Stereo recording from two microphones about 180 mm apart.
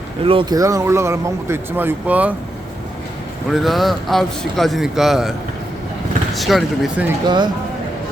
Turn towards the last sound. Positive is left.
turn(degrees=-25)  # may be behind; listen again after turning